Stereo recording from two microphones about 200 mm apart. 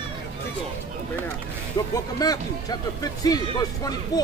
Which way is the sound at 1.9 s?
20° left (ahead or behind).